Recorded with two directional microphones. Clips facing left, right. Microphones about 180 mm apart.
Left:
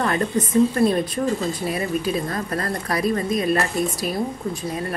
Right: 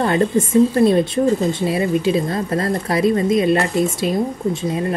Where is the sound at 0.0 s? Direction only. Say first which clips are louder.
Right 5 dB; 25° right (ahead or behind).